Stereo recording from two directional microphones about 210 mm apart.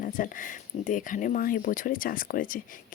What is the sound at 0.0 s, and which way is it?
Speech, 40° left (ahead or behind).